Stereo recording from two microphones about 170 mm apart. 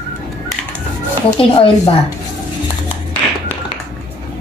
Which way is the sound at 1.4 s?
30° left (ahead or behind).